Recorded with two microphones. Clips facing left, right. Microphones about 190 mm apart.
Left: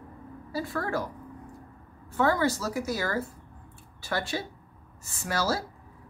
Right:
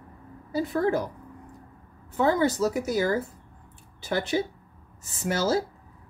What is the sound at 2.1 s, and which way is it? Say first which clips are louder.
Speech: right 2 dB; 20° right (ahead or behind).